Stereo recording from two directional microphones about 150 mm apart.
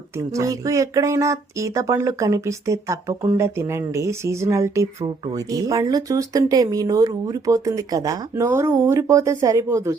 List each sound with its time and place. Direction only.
0.3 s speech: 20° right (ahead or behind)